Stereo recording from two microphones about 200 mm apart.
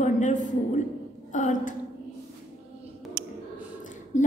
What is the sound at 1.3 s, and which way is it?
Speech, 40° left (ahead or behind).